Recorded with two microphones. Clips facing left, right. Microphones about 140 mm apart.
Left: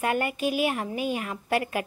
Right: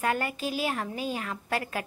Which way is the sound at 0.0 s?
15° left (ahead or behind).